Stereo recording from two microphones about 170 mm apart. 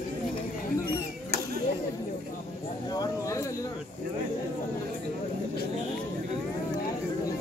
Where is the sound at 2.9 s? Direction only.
20° left (ahead or behind).